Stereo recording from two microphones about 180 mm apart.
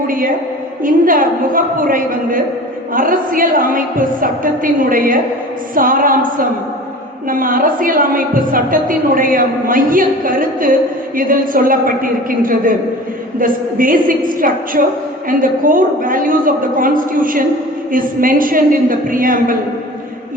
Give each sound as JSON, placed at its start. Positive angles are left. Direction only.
{"t": 0.1, "sound": "a woman's voice", "side_deg": -50}